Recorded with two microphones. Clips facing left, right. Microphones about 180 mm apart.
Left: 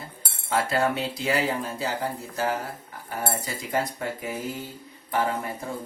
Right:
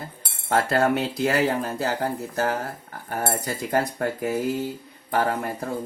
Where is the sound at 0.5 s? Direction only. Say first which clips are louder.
Right 3 dB; 60° right (ahead or behind).